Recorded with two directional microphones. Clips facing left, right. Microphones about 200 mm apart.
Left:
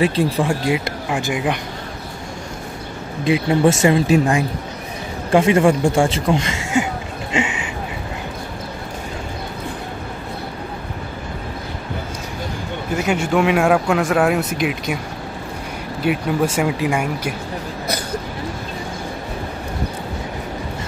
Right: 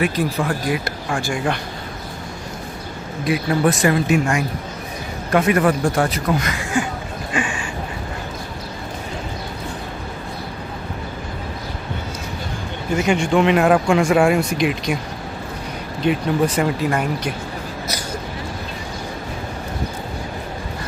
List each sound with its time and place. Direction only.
0.0 s a man's voice: 30° left (ahead or behind)
3.3 s a man's voice: 25° left (ahead or behind)
7.3 s a sound: 20° left (ahead or behind)
12.9 s speech: 5° left (ahead or behind)
16.0 s speech: 5° left (ahead or behind)